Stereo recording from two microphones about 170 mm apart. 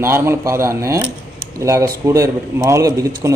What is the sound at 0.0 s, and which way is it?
A man's voice, 15° right (ahead or behind).